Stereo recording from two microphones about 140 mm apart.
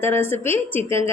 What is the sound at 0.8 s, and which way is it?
Speech, 40° right (ahead or behind).